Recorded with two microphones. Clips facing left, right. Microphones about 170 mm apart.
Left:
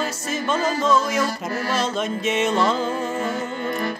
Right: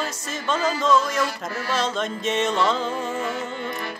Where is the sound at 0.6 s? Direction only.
50° left (ahead or behind).